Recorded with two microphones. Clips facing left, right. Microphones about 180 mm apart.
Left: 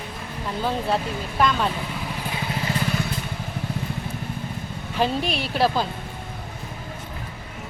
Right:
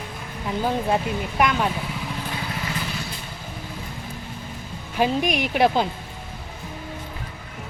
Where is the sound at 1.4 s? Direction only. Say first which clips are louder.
Even; 15° right (ahead or behind).